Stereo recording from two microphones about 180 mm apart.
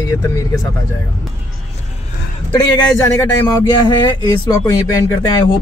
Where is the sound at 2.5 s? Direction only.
20° left (ahead or behind).